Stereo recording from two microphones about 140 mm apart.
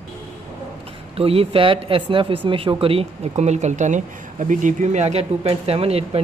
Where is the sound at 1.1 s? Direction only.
45° right (ahead or behind).